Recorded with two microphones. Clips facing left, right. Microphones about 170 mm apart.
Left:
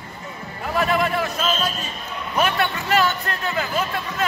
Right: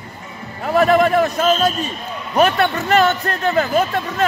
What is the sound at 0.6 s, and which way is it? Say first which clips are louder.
Speech: right 7 dB; 45° right (ahead or behind).